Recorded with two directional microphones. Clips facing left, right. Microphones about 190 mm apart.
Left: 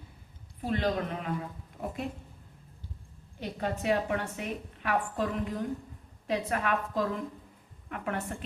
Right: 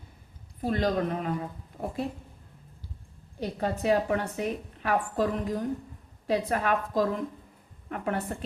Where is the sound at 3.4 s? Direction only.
35° right (ahead or behind).